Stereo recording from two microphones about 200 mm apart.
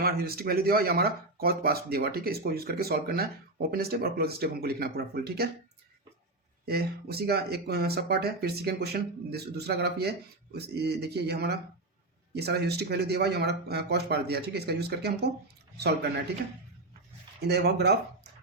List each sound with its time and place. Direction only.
0.0 s speech: 50° right (ahead or behind)
6.7 s speech: 50° right (ahead or behind)
17.4 s speech: 55° right (ahead or behind)